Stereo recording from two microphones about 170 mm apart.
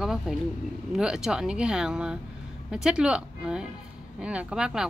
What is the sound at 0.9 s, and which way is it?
A woman's voice, 5° right (ahead or behind).